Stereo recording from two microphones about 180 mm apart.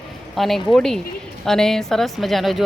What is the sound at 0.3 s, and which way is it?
A woman's voice, centre (ahead or behind).